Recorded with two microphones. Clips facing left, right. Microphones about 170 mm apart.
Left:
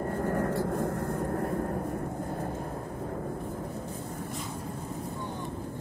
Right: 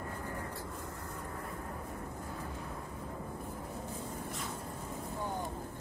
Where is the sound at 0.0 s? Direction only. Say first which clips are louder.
Left 12 dB; 50° left (ahead or behind).